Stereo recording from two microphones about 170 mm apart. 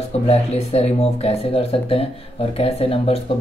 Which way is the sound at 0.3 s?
40° left (ahead or behind).